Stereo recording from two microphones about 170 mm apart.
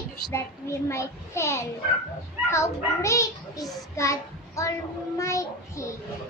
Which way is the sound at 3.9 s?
20° left (ahead or behind).